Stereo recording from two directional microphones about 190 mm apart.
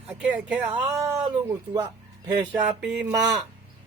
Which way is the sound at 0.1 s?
5° right (ahead or behind).